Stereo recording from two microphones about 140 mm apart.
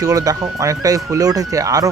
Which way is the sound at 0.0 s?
25° right (ahead or behind).